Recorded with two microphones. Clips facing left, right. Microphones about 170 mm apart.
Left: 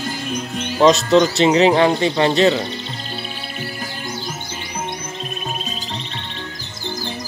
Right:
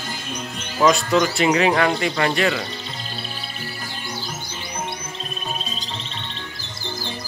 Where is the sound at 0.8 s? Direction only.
30° left (ahead or behind).